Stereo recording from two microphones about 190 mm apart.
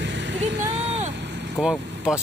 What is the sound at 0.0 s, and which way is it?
Vehicle, 65° right (ahead or behind).